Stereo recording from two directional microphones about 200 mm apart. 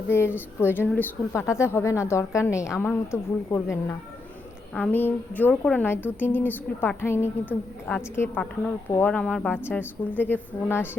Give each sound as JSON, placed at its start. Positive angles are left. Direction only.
{"t": 0.1, "sound": "speech", "side_deg": 10}